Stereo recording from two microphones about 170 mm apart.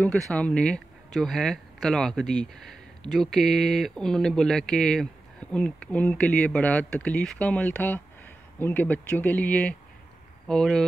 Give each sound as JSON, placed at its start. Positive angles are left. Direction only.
{"t": 0.0, "sound": "speech", "side_deg": 5}